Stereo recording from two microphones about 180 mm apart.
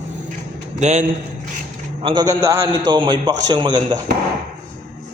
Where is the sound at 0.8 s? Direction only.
40° right (ahead or behind).